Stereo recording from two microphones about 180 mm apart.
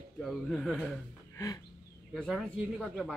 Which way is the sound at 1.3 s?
20° left (ahead or behind).